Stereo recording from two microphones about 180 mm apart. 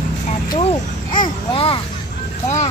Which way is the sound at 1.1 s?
25° left (ahead or behind).